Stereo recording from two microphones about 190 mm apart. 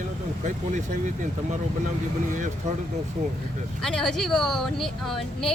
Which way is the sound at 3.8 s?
5° left (ahead or behind).